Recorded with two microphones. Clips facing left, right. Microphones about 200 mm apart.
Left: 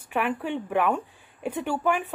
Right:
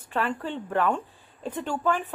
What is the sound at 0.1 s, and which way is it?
Speech, 15° left (ahead or behind).